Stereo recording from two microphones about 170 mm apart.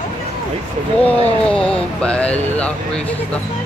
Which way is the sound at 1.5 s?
5° left (ahead or behind).